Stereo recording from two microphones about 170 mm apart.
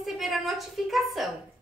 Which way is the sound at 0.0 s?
Centre (ahead or behind).